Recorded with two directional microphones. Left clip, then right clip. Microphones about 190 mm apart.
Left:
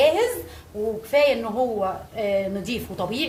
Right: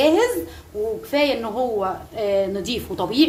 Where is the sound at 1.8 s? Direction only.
35° right (ahead or behind).